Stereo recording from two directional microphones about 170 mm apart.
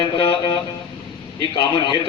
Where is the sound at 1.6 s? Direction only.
25° left (ahead or behind).